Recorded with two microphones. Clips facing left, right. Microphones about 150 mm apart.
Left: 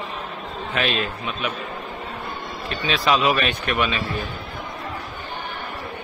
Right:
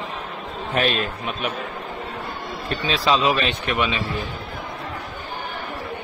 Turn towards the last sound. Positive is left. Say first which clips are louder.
# even
turn(degrees=-20)  # may be behind; listen again after turning